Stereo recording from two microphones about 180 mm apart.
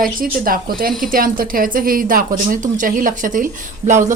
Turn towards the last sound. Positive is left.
turn(degrees=-45)  # may be behind; listen again after turning